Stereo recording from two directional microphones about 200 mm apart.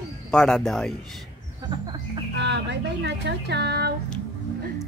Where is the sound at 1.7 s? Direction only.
20° right (ahead or behind).